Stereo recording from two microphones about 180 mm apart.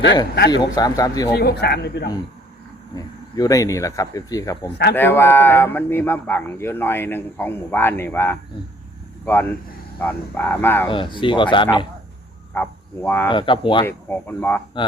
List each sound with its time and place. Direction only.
0.5 s speech: 20° left (ahead or behind)
1.3 s speech: 65° left (ahead or behind)
2.9 s speech: 20° left (ahead or behind)
10.8 s speech: 25° left (ahead or behind)
12.5 s speech: 10° left (ahead or behind)
13.2 s speech: 25° left (ahead or behind)
13.8 s speech: 10° left (ahead or behind)